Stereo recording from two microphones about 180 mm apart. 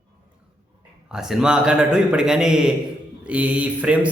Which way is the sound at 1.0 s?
5° right (ahead or behind).